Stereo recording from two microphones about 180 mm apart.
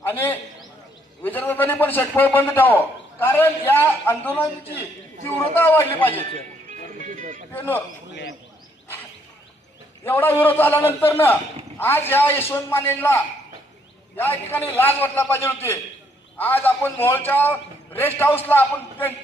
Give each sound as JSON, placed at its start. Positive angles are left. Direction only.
{"t": 0.0, "sound": "a man's voice", "side_deg": 10}
{"t": 6.7, "sound": "music", "side_deg": -45}
{"t": 7.5, "sound": "a man's voice", "side_deg": 10}
{"t": 10.0, "sound": "a man's voice", "side_deg": 10}